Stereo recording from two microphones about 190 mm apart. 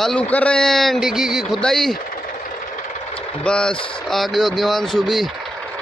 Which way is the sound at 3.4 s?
5° left (ahead or behind).